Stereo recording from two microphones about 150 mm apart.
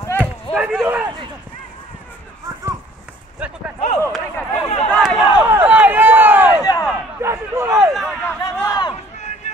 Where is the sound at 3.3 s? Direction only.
10° right (ahead or behind).